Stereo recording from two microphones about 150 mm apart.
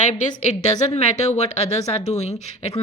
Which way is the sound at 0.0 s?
50° left (ahead or behind).